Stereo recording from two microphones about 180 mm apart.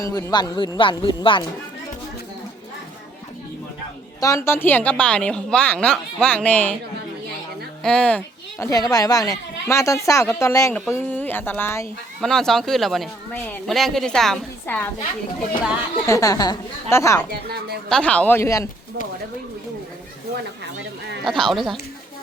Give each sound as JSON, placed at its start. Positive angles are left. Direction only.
{"t": 0.0, "sound": "speech", "side_deg": 20}
{"t": 4.2, "sound": "speech", "side_deg": 15}
{"t": 7.8, "sound": "speech", "side_deg": 5}
{"t": 12.2, "sound": "speech", "side_deg": 5}
{"t": 16.0, "sound": "speech", "side_deg": 20}
{"t": 17.8, "sound": "speech", "side_deg": 5}
{"t": 21.2, "sound": "speech", "side_deg": 0}